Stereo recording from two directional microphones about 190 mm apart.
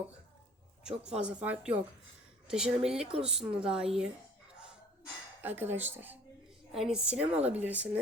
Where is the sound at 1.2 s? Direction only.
5° right (ahead or behind).